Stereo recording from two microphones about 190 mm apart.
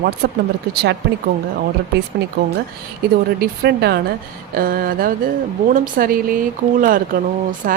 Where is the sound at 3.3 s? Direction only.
60° right (ahead or behind).